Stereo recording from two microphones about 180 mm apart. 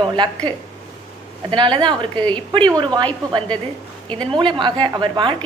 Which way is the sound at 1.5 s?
25° right (ahead or behind).